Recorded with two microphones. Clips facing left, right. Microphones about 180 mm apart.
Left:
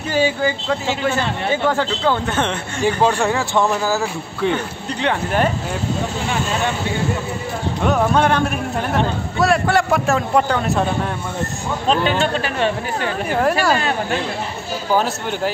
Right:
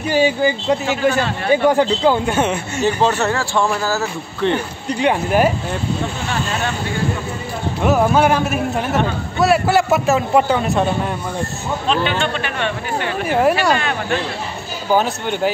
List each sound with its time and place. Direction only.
0.1 s speech: 15° right (ahead or behind)
2.8 s speech: 10° left (ahead or behind)
4.8 s speech: 10° right (ahead or behind)
7.8 s a man's voice: 5° right (ahead or behind)
11.9 s speech: 40° left (ahead or behind)
13.3 s a man's voice: 5° right (ahead or behind)
15.0 s a man's voice: centre (ahead or behind)